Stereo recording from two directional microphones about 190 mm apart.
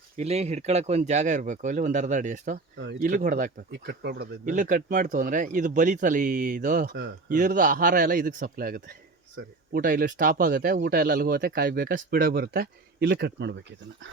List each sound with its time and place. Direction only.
0.2 s speech: 35° right (ahead or behind)
2.7 s speech: 70° right (ahead or behind)
3.0 s speech: 45° right (ahead or behind)
3.7 s speech: 60° right (ahead or behind)